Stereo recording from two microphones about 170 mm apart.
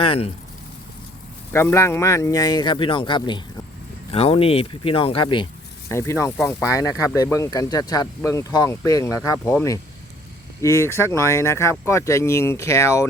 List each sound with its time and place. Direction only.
0.0 s speech: 35° left (ahead or behind)
1.5 s speech: 15° left (ahead or behind)
5.9 s speech: 15° left (ahead or behind)
10.6 s speech: 15° left (ahead or behind)